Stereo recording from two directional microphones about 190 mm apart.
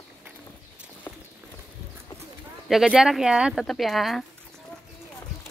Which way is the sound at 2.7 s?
Centre (ahead or behind).